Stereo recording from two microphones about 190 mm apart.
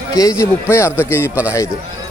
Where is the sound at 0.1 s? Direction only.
20° left (ahead or behind).